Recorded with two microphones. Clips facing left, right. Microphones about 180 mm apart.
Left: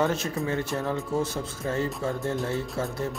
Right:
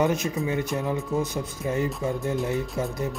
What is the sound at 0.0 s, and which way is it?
Speech, 15° right (ahead or behind).